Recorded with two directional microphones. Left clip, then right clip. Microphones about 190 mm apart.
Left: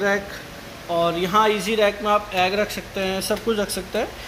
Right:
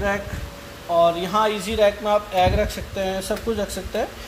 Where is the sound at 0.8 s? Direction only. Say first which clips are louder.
Right 3 dB; 10° right (ahead or behind).